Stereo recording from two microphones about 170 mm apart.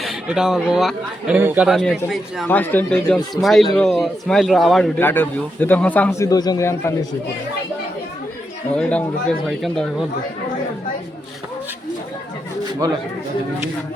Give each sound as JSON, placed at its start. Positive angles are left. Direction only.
{"t": 0.0, "sound": "a man's voice", "side_deg": -5}
{"t": 2.5, "sound": "a man's voice", "side_deg": 10}
{"t": 4.9, "sound": "a man's voice", "side_deg": 10}
{"t": 8.7, "sound": "a man's voice", "side_deg": 5}